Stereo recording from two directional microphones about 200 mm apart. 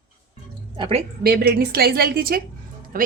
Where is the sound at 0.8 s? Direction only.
30° right (ahead or behind).